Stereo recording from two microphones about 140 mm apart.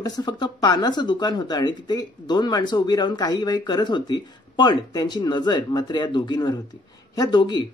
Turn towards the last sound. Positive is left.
turn(degrees=30)  # may be behind; listen again after turning